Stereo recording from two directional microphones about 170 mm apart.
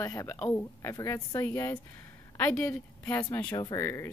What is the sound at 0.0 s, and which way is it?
Speech, 20° left (ahead or behind).